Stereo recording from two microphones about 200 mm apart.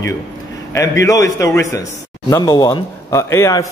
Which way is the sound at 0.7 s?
15° left (ahead or behind).